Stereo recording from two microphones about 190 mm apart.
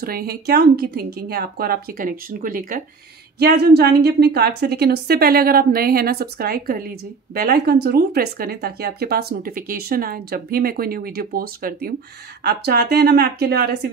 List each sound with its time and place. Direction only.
0.0 s a woman's voice: 50° right (ahead or behind)